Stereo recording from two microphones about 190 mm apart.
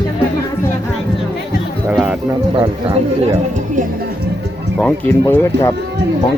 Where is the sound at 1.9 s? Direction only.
5° right (ahead or behind).